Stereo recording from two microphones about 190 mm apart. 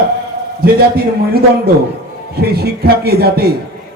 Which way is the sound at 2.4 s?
55° right (ahead or behind).